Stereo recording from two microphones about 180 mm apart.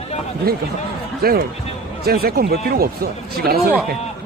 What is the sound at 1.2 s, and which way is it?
Speech, 55° right (ahead or behind).